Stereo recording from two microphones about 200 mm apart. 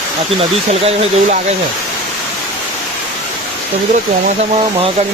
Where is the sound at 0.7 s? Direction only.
30° right (ahead or behind).